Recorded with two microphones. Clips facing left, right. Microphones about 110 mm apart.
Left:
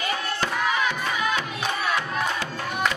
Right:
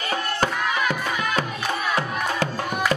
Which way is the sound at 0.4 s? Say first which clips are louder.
Even; 45° right (ahead or behind).